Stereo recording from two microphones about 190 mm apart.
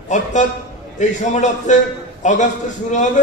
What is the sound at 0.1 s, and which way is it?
Speech, 40° left (ahead or behind).